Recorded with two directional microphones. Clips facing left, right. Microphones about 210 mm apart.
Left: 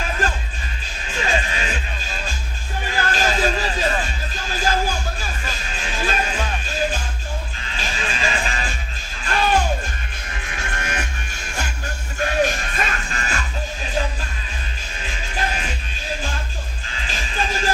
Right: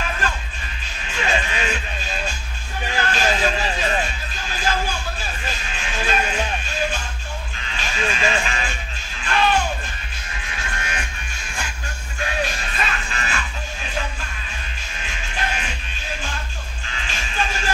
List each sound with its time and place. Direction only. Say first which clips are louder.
1.1 s music: even; 35° left (ahead or behind)
3.0 s a sound: even; 40° left (ahead or behind)
4.5 s music: left 2 dB; 40° left (ahead or behind)
7.6 s music: right 5 dB; 35° left (ahead or behind)
10.5 s music: left 2 dB; 45° left (ahead or behind)
12.2 s music: left 6 dB; 45° left (ahead or behind)
17.1 s music: left 1 dB; 35° left (ahead or behind)